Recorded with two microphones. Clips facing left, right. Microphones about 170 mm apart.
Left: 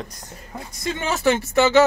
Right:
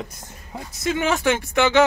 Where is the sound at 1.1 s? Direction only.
Centre (ahead or behind).